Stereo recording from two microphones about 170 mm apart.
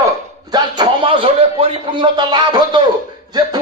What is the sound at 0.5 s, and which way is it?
A man's voice, 30° right (ahead or behind).